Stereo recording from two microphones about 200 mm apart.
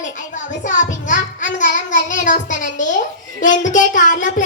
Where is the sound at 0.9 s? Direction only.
40° left (ahead or behind).